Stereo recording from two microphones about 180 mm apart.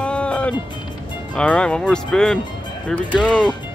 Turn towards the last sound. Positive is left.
turn(degrees=0)  # may be behind; listen again after turning